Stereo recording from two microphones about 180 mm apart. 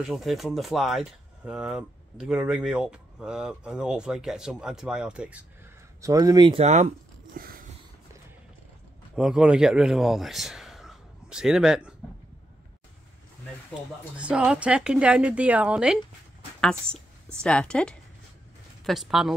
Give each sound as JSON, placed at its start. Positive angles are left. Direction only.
{"t": 0.0, "sound": "speech", "side_deg": 0}
{"t": 5.9, "sound": "speech", "side_deg": -20}
{"t": 6.6, "sound": "speech", "side_deg": -40}
{"t": 7.3, "sound": "a sound", "side_deg": -50}
{"t": 9.1, "sound": "a man's voice", "side_deg": -5}
{"t": 14.1, "sound": "speech", "side_deg": -5}
{"t": 17.4, "sound": "speech", "side_deg": 5}